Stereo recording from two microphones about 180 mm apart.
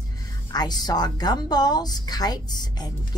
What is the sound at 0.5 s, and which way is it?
A woman's voice, 20° left (ahead or behind).